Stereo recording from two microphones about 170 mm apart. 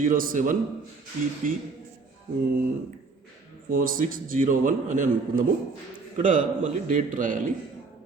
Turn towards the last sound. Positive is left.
turn(degrees=-50)  # may be behind; listen again after turning